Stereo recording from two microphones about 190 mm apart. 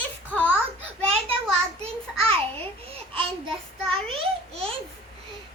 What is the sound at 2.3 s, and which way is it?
Babbling, 30° right (ahead or behind).